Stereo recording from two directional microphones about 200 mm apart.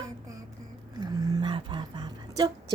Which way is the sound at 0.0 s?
15° right (ahead or behind).